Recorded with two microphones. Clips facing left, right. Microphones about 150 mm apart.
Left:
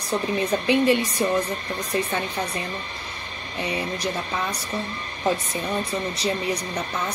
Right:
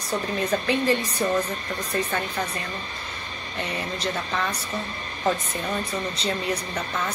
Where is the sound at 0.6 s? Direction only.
20° left (ahead or behind).